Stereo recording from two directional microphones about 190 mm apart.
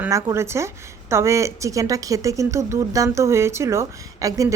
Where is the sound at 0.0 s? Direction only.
15° right (ahead or behind).